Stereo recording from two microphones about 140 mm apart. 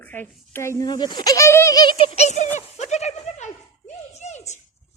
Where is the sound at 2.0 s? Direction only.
45° left (ahead or behind).